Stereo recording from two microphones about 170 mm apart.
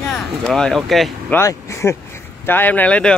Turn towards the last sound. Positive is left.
turn(degrees=5)  # may be behind; listen again after turning